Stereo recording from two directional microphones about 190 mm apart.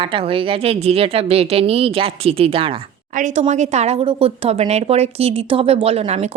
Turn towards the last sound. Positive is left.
turn(degrees=-30)  # may be behind; listen again after turning